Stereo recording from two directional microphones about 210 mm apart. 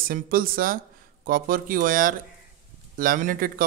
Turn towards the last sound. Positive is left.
turn(degrees=-40)  # may be behind; listen again after turning